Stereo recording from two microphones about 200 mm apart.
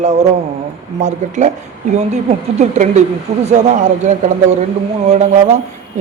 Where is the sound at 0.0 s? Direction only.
35° right (ahead or behind).